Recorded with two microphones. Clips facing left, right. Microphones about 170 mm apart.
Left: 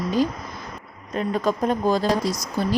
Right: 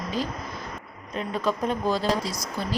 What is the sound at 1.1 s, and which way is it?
Speech, 45° left (ahead or behind).